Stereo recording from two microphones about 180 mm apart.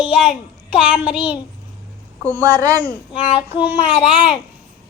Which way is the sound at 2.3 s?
20° right (ahead or behind).